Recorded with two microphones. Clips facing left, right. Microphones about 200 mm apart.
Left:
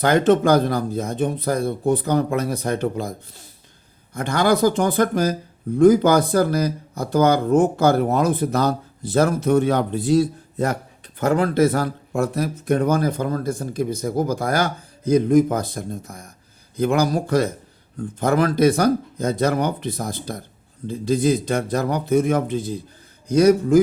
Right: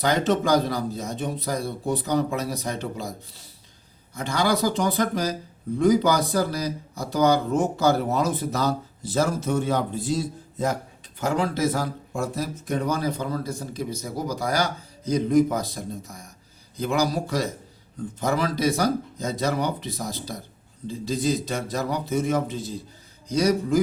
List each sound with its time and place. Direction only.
0.0 s speech: 55° left (ahead or behind)